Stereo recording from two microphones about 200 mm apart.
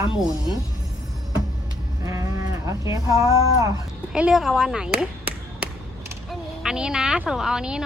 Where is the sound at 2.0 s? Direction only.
15° right (ahead or behind).